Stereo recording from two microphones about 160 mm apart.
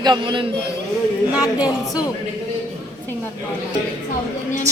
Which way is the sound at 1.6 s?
25° left (ahead or behind).